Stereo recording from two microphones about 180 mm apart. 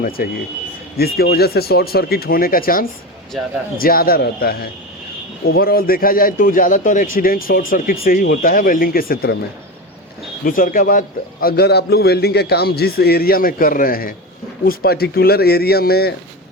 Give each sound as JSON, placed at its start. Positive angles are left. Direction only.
{"t": 0.2, "sound": "a man's voice", "side_deg": 55}
{"t": 3.3, "sound": "speech", "side_deg": 0}
{"t": 3.8, "sound": "a man's voice", "side_deg": 55}
{"t": 10.4, "sound": "a man's voice", "side_deg": 50}